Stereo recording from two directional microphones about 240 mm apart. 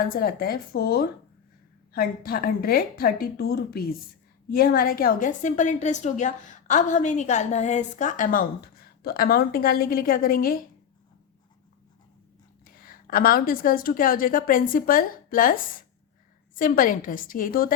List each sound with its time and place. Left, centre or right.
0.1 s a woman's voice: left
12.6 s a woman's voice: left